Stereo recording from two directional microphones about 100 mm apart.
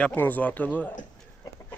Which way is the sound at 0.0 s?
15° left (ahead or behind).